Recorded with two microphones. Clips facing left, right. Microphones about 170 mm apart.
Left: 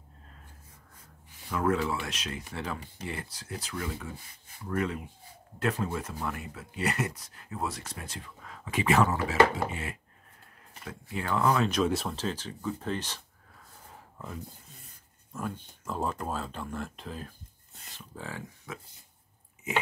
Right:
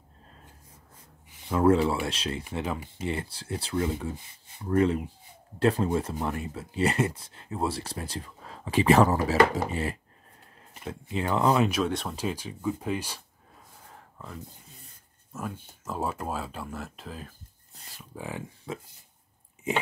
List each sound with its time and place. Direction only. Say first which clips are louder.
1.5 s speech: right 6 dB; 30° right (ahead or behind)
10.7 s speech: right 5 dB; 25° right (ahead or behind)
11.7 s speech: left 1 dB; centre (ahead or behind)
12.2 s speech: right 2 dB; 10° right (ahead or behind)
13.8 s a sound: left 1 dB; centre (ahead or behind)
15.3 s speech: even; 5° right (ahead or behind)
17.9 s speech: right 4 dB; 15° right (ahead or behind)
18.7 s speech: right 7 dB; 25° right (ahead or behind)